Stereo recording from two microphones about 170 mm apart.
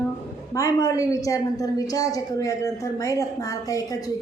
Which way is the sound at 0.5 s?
20° left (ahead or behind).